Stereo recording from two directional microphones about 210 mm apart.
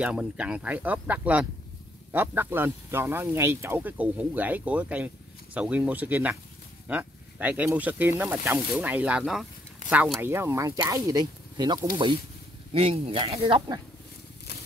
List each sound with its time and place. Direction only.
0.0 s speech: 5° right (ahead or behind); by 13.7 s 20° right (ahead or behind)